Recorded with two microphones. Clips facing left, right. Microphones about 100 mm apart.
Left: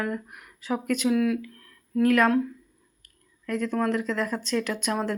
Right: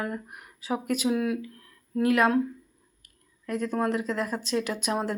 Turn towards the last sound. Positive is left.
turn(degrees=-15)  # may be behind; listen again after turning